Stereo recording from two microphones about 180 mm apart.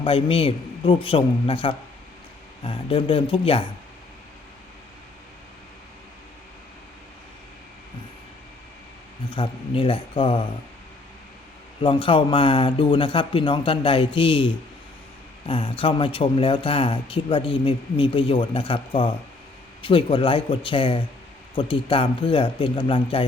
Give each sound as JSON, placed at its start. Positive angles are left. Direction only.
{"t": 0.0, "sound": "a man's voice", "side_deg": 30}
{"t": 9.3, "sound": "speech", "side_deg": 30}
{"t": 11.8, "sound": "speech", "side_deg": 30}